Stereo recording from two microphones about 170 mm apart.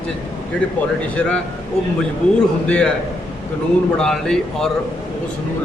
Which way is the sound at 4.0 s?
5° left (ahead or behind).